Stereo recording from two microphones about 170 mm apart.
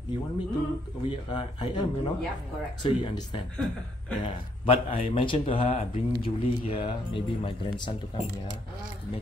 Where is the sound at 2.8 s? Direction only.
30° left (ahead or behind).